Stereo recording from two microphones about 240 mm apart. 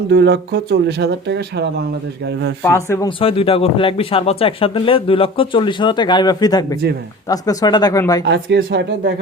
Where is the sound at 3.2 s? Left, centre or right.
Left.